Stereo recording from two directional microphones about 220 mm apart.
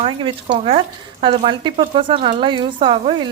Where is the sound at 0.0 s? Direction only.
25° right (ahead or behind).